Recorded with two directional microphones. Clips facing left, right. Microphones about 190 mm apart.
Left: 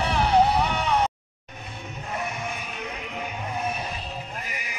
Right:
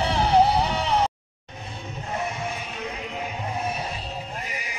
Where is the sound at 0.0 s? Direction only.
25° right (ahead or behind).